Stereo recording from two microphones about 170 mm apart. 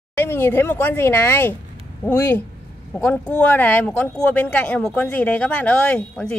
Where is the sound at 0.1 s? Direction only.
15° left (ahead or behind).